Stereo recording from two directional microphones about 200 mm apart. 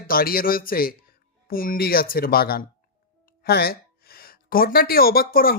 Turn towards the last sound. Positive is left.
turn(degrees=45)  # may be behind; listen again after turning